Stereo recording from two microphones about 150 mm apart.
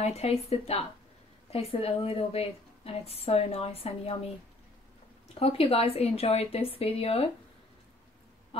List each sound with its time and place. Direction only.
0.0 s a woman's voice: 45° left (ahead or behind)
5.3 s speech: 40° left (ahead or behind)